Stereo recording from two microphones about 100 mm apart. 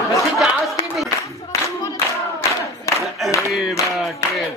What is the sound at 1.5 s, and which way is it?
Singing, 30° left (ahead or behind).